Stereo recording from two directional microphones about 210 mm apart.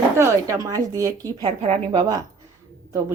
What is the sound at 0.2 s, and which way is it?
Speech, 15° right (ahead or behind).